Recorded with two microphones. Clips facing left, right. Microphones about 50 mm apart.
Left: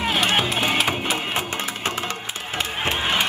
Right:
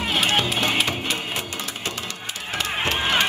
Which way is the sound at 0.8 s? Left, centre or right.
Centre.